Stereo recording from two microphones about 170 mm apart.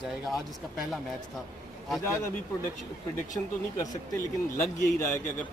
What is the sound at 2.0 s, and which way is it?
Speech, 15° left (ahead or behind).